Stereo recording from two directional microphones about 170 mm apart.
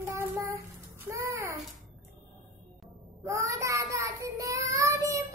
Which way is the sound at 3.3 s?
20° right (ahead or behind).